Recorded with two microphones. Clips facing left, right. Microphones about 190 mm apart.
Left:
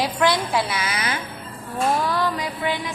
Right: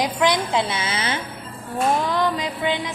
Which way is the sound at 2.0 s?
20° right (ahead or behind).